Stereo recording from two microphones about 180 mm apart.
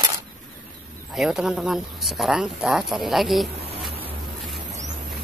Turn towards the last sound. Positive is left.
turn(degrees=0)  # may be behind; listen again after turning